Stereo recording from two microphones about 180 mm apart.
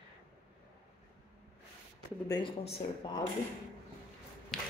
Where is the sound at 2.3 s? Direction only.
30° left (ahead or behind).